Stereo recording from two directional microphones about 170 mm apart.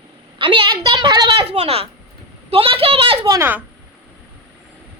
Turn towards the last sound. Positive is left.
turn(degrees=-15)  # may be behind; listen again after turning